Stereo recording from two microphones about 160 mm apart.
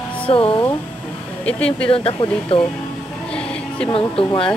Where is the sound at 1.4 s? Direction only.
5° left (ahead or behind).